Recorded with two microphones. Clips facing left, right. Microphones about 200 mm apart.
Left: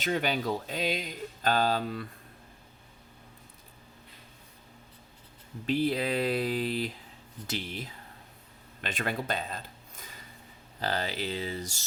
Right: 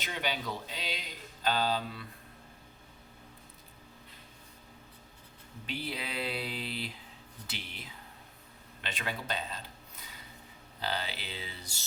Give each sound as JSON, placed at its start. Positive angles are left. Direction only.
{"t": 0.0, "sound": "speech", "side_deg": 45}
{"t": 5.6, "sound": "speech", "side_deg": 40}
{"t": 8.8, "sound": "speech", "side_deg": 50}